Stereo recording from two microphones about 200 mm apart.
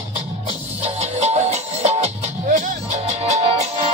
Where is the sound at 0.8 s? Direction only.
30° right (ahead or behind).